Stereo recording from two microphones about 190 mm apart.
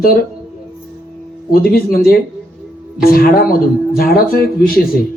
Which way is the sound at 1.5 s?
50° left (ahead or behind).